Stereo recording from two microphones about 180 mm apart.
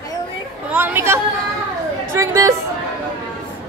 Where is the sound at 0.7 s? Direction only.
10° right (ahead or behind).